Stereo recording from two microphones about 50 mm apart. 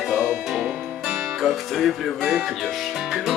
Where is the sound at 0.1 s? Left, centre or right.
Centre.